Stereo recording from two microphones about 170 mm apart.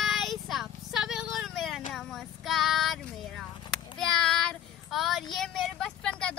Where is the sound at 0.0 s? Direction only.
Centre (ahead or behind).